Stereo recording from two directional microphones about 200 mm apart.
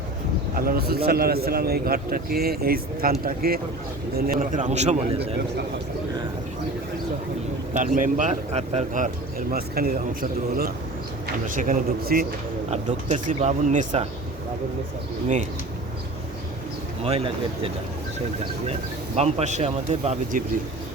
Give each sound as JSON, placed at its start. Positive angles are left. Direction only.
{"t": 0.5, "sound": "a man's voice", "side_deg": -45}
{"t": 7.7, "sound": "speech", "side_deg": -40}
{"t": 9.5, "sound": "a man's voice", "side_deg": -50}
{"t": 17.0, "sound": "speech", "side_deg": -30}
{"t": 18.7, "sound": "speech", "side_deg": -30}